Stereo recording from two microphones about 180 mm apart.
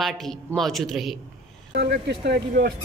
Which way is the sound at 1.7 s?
65° right (ahead or behind).